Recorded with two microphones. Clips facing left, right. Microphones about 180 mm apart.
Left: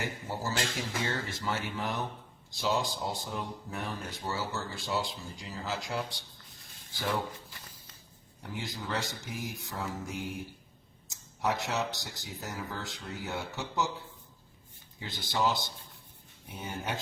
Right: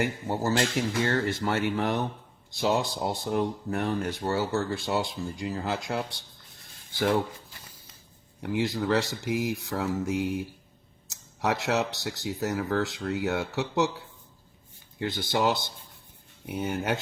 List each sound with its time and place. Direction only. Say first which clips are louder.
0.0 s speech: right 8 dB; 60° right (ahead or behind)
8.4 s speech: right 12 dB; 80° right
14.9 s speech: right 6 dB; 70° right (ahead or behind)